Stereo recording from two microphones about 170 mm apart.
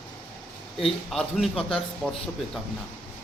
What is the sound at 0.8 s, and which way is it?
Speech, centre (ahead or behind).